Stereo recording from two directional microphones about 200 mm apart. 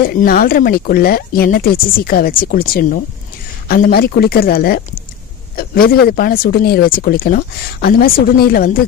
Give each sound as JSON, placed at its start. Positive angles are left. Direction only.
{"t": 0.0, "sound": "speech", "side_deg": 50}